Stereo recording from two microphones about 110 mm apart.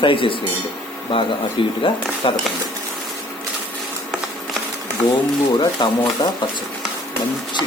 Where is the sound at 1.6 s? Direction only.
50° left (ahead or behind).